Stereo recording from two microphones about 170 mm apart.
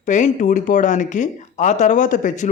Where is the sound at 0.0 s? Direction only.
45° left (ahead or behind).